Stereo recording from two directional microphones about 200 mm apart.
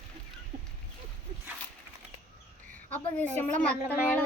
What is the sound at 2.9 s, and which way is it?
Speech, 10° left (ahead or behind).